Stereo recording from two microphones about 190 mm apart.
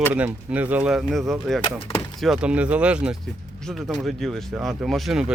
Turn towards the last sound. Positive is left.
turn(degrees=0)  # may be behind; listen again after turning